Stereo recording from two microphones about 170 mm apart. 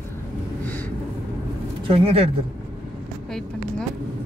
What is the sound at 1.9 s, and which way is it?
Speech, 35° right (ahead or behind).